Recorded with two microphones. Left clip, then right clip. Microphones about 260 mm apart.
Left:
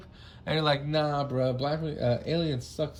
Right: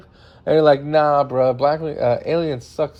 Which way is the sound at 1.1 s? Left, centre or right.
Centre.